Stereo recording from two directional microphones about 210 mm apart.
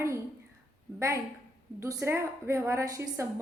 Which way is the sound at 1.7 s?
15° right (ahead or behind).